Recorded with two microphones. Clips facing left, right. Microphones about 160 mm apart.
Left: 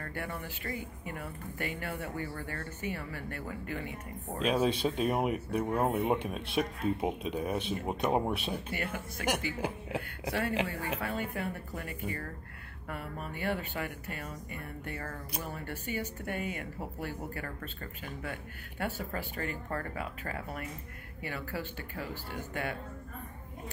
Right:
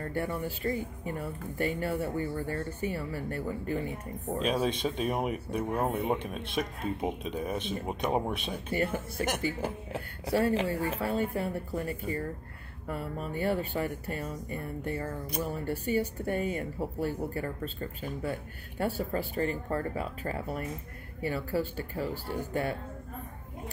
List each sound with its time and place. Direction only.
0.0 s speech: 35° right (ahead or behind)
4.4 s speech: 5° left (ahead or behind)
8.7 s speech: 30° right (ahead or behind)
10.3 s speech: 35° right (ahead or behind)